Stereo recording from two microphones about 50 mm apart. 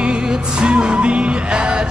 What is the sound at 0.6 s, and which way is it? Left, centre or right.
Music, centre.